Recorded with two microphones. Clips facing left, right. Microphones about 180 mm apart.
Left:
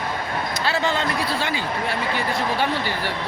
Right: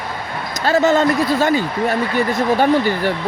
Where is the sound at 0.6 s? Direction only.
45° right (ahead or behind).